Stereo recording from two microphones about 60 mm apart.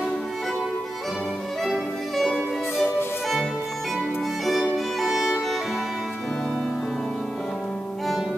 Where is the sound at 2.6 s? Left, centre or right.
Left.